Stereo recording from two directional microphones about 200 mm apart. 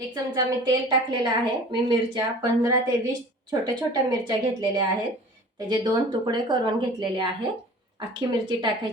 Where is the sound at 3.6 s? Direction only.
20° right (ahead or behind).